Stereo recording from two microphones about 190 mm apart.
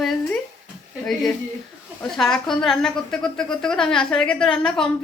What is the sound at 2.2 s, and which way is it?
A woman's voice, centre (ahead or behind).